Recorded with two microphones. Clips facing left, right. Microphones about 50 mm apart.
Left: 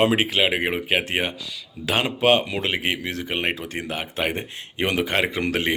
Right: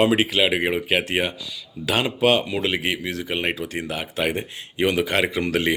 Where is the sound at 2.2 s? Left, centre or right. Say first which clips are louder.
Even; left.